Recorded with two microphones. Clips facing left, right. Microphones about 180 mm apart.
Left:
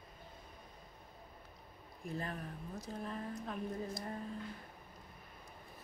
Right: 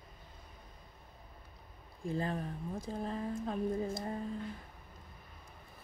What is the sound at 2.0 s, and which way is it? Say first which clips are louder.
Speech: right 6 dB; 30° right (ahead or behind).